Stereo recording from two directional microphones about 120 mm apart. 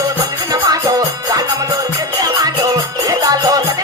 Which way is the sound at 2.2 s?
30° right (ahead or behind).